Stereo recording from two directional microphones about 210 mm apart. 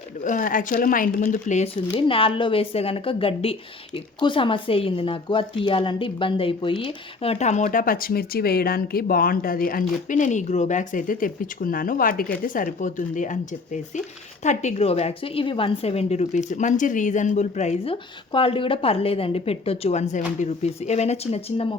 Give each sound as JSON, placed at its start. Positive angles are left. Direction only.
{"t": 0.3, "sound": "a woman's voice", "side_deg": 40}